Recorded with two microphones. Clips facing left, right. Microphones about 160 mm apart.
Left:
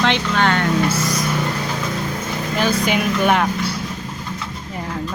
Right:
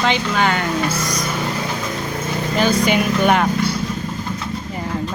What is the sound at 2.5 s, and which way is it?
Speech, centre (ahead or behind).